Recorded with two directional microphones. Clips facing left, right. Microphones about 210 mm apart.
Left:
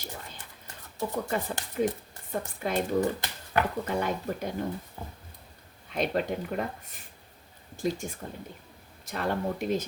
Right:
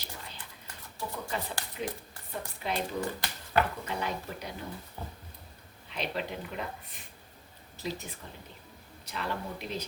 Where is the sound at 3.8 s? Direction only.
50° left (ahead or behind).